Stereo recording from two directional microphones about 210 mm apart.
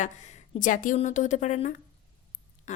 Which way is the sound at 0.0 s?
35° left (ahead or behind).